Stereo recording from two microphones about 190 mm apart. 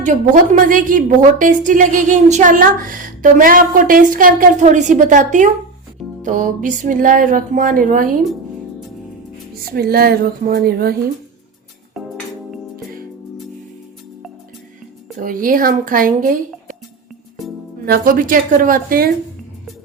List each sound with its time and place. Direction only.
0.5 s a woman's voice: 45° right (ahead or behind)
9.7 s a woman's voice: 55° right (ahead or behind)
12.0 s music: centre (ahead or behind)
15.2 s a woman's voice: 45° right (ahead or behind)
17.8 s a woman's voice: 50° right (ahead or behind)